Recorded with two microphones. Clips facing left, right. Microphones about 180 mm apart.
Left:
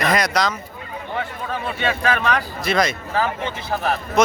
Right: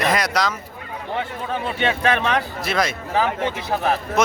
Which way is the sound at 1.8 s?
25° right (ahead or behind).